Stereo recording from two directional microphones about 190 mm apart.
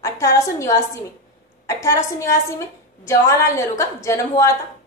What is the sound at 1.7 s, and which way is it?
A woman's voice, 15° left (ahead or behind).